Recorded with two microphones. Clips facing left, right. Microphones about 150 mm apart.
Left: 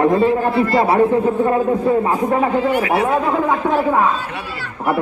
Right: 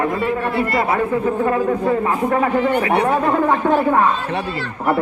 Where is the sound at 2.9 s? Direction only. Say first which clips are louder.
Even; 5° left (ahead or behind).